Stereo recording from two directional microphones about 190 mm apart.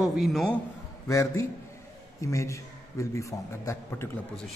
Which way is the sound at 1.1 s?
15° left (ahead or behind).